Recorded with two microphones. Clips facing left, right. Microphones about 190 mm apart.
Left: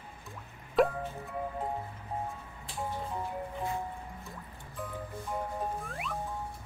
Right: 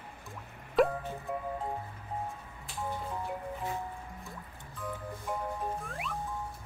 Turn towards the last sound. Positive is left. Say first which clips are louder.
# even
turn(degrees=0)  # may be behind; listen again after turning